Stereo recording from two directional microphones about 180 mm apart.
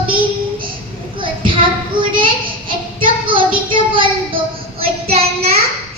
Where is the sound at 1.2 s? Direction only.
30° right (ahead or behind).